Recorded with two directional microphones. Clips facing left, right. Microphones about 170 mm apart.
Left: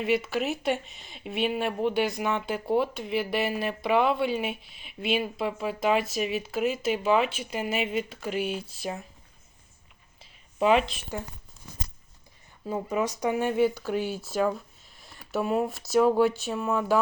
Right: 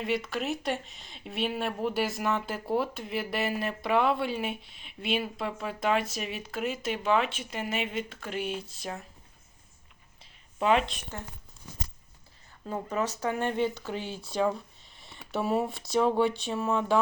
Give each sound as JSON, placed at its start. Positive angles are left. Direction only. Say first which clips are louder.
{"t": 0.0, "sound": "speech", "louder": "left 4 dB", "side_deg": 5}
{"t": 10.6, "sound": "speech", "louder": "left 3 dB", "side_deg": 5}
{"t": 12.6, "sound": "speech", "louder": "left 3 dB", "side_deg": 10}